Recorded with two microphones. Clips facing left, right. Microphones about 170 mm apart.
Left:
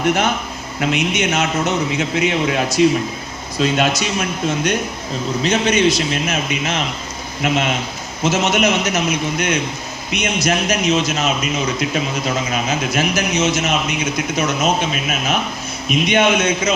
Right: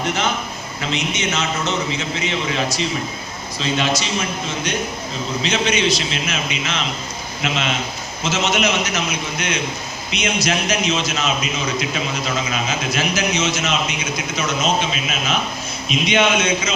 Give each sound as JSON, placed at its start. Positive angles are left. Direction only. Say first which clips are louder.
{"t": 0.0, "sound": "a man's voice", "louder": "left 4 dB", "side_deg": 55}
{"t": 12.5, "sound": "a man's voice", "louder": "left 3 dB", "side_deg": 50}